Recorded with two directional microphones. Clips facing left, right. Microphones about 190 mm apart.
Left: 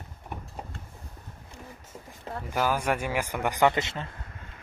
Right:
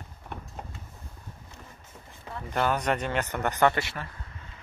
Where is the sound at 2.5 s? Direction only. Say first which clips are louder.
Even; 5° left (ahead or behind).